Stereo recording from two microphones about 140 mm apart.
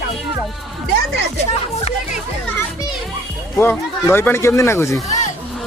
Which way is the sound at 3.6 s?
15° left (ahead or behind).